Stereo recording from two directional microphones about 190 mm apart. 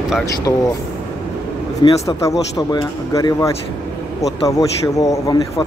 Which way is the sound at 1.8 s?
25° left (ahead or behind).